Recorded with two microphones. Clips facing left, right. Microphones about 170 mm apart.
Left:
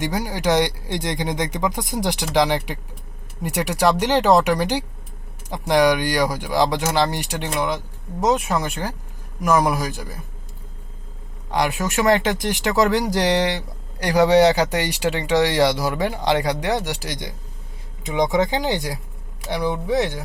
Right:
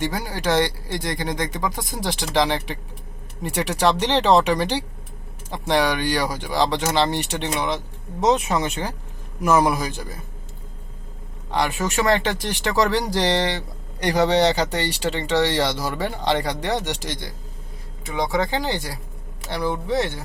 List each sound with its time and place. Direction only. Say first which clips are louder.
0.0 s speech: left 2 dB; 15° left (ahead or behind); by 9.7 s 5° right (ahead or behind)
9.7 s speech: left 1 dB; 10° left (ahead or behind)
12.0 s speech: left 5 dB; 15° left (ahead or behind)